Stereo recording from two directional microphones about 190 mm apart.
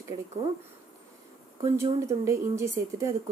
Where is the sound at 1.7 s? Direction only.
15° right (ahead or behind).